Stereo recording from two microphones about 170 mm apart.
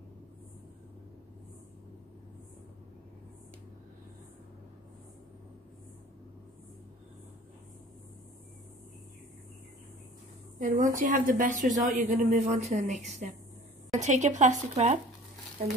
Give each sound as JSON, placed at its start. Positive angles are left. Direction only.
{"t": 10.6, "sound": "a woman's voice", "side_deg": -50}